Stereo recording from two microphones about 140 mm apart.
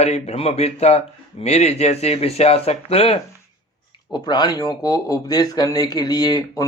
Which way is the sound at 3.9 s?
30° left (ahead or behind).